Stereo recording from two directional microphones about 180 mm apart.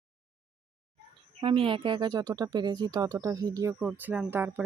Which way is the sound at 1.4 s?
30° right (ahead or behind).